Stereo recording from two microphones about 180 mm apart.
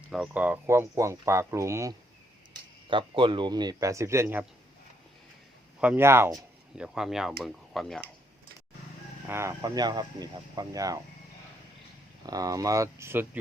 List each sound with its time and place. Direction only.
0.1 s speech: 5° right (ahead or behind)
2.9 s speech: 25° right (ahead or behind)
5.8 s speech: 10° right (ahead or behind)
9.3 s speech: 15° right (ahead or behind)
12.2 s speech: 20° right (ahead or behind)